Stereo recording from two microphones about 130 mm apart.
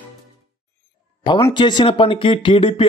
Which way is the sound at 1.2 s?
35° left (ahead or behind).